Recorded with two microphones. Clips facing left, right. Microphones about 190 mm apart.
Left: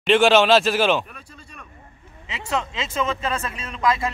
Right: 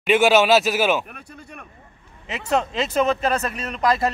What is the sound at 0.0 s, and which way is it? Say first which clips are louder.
Speech: even; 5° right (ahead or behind).